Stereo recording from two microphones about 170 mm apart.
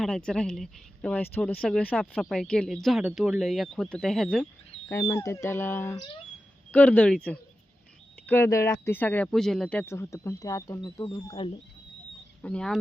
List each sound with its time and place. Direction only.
0.0 s speech: 5° left (ahead or behind)
4.9 s speech: 15° left (ahead or behind)
12.4 s speech: 5° left (ahead or behind)